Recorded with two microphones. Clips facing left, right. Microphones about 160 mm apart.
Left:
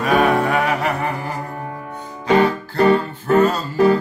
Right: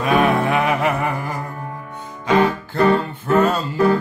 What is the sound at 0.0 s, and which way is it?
Music, 40° left (ahead or behind).